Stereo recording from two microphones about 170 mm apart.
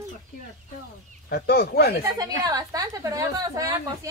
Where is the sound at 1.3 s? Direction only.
65° left (ahead or behind).